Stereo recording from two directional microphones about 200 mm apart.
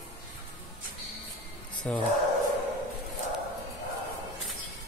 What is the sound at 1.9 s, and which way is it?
Speech, 5° left (ahead or behind).